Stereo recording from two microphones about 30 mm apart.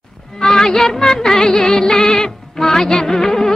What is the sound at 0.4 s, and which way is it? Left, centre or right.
Music, centre.